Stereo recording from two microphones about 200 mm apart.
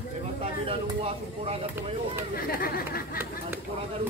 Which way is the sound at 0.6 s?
30° right (ahead or behind).